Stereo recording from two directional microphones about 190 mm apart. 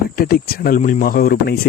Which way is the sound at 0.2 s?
50° left (ahead or behind).